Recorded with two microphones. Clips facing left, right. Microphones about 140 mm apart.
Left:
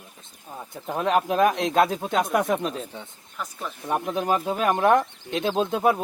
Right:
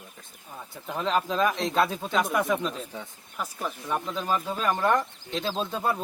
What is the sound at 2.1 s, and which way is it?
Speech, 45° left (ahead or behind).